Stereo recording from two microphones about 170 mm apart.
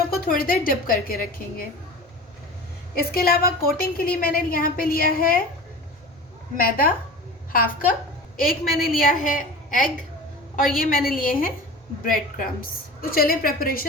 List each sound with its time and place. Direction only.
0.1 s a woman's voice: 60° left (ahead or behind)
2.9 s a woman's voice: 60° left (ahead or behind)
6.6 s a woman's voice: 55° left (ahead or behind)
13.0 s a woman's voice: 60° left (ahead or behind)